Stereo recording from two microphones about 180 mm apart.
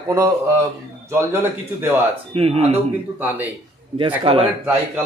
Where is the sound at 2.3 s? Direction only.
35° right (ahead or behind).